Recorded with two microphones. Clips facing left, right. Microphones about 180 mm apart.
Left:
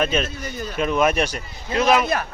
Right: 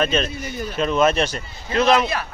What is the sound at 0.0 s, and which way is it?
Speech, 10° left (ahead or behind).